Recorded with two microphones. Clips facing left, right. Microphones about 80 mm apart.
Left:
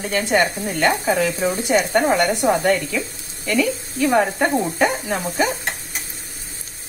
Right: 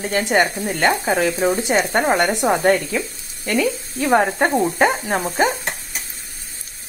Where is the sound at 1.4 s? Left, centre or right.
Right.